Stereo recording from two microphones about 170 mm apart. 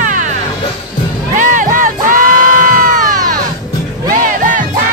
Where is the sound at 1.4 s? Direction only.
50° right (ahead or behind).